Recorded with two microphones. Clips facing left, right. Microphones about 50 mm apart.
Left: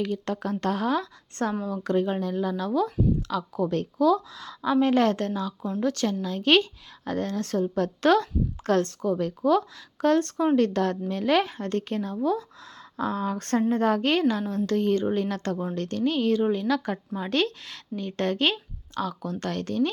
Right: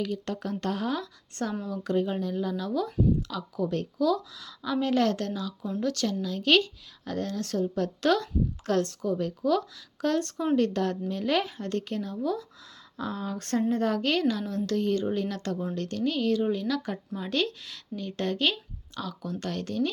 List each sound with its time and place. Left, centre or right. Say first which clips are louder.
0.0 s speech: left 3 dB; left
10.3 s speech: left 3 dB; left